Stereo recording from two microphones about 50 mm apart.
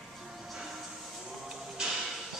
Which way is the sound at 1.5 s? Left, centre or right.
Centre.